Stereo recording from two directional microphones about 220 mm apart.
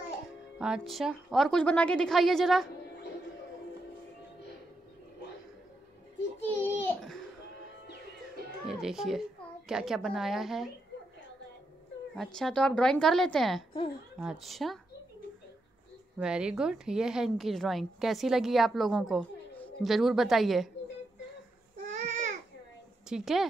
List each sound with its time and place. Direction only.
0.6 s a woman's voice: centre (ahead or behind)
6.4 s a sound: 10° left (ahead or behind)
8.6 s a child's voice: centre (ahead or behind)
12.2 s a woman's voice: 5° left (ahead or behind)
16.2 s a woman's voice: 5° right (ahead or behind)
21.9 s babbling: 35° right (ahead or behind)
23.0 s a woman's voice: centre (ahead or behind)